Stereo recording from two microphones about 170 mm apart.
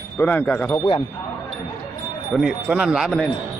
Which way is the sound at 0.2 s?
10° left (ahead or behind).